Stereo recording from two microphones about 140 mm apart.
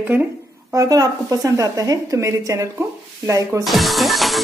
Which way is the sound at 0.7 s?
25° right (ahead or behind).